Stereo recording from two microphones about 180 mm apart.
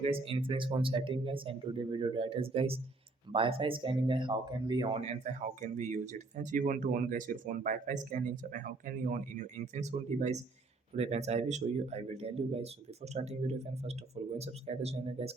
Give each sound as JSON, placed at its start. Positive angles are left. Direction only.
{"t": 0.0, "sound": "speech", "side_deg": -30}